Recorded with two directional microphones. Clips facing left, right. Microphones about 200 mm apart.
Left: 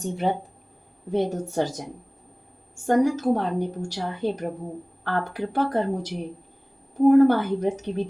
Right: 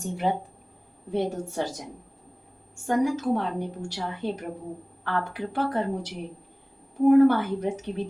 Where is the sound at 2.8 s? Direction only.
40° left (ahead or behind).